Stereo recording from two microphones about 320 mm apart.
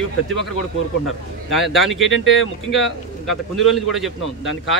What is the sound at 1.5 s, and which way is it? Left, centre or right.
Speech, centre.